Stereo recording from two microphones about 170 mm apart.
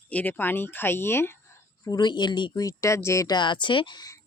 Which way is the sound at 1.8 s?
25° left (ahead or behind).